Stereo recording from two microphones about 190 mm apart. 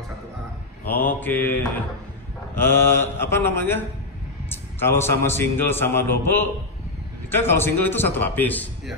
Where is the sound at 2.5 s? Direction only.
10° left (ahead or behind).